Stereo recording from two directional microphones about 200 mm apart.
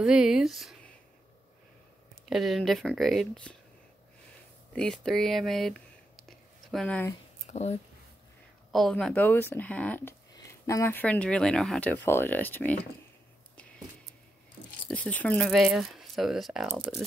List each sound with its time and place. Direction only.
0.0 s speech: 5° right (ahead or behind)
2.2 s speech: centre (ahead or behind)
4.7 s speech: 5° left (ahead or behind)
7.4 s speech: 35° left (ahead or behind)
8.7 s speech: 5° left (ahead or behind)
14.9 s speech: 5° left (ahead or behind)